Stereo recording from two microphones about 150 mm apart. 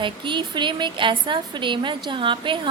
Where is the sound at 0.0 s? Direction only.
30° right (ahead or behind).